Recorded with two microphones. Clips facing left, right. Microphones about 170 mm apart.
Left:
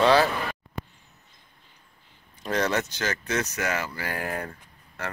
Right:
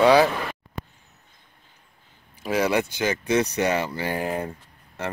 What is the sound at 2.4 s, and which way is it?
Speech, 10° right (ahead or behind).